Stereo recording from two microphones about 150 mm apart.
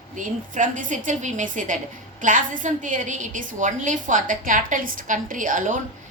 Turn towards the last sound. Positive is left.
turn(degrees=-60)  # may be behind; listen again after turning